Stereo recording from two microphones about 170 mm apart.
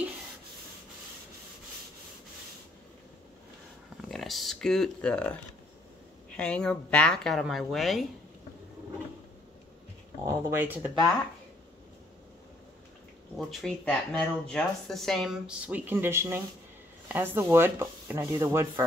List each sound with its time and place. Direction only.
4.0 s speech: centre (ahead or behind)
10.2 s speech: 15° right (ahead or behind)
13.4 s speech: centre (ahead or behind); by 18.9 s 15° right (ahead or behind)